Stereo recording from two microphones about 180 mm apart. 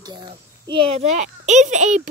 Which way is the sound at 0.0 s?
25° right (ahead or behind).